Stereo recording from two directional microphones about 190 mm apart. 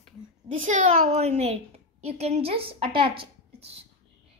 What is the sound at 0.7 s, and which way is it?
A woman's voice, 40° right (ahead or behind).